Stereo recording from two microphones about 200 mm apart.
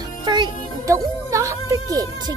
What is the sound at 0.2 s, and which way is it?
Music, 20° right (ahead or behind).